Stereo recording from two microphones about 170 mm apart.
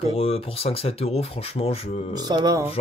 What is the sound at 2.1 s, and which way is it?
Speech, 25° right (ahead or behind).